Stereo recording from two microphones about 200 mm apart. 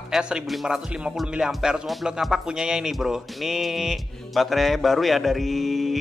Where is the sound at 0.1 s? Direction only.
5° right (ahead or behind).